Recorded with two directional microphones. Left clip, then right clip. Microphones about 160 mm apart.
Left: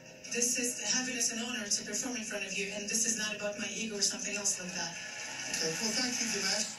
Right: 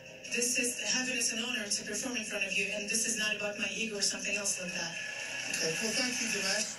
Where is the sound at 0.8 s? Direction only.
40° left (ahead or behind).